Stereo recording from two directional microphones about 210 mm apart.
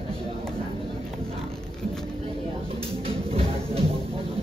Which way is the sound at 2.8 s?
25° right (ahead or behind).